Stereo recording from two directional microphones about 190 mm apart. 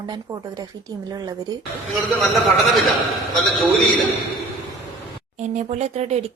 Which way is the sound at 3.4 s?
Centre (ahead or behind).